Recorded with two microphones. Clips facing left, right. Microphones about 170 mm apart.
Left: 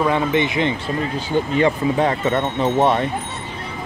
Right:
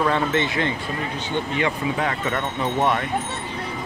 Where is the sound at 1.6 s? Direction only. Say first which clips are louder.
Left 7 dB; 30° left (ahead or behind).